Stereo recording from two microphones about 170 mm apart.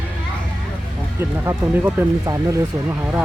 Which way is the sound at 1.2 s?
15° right (ahead or behind).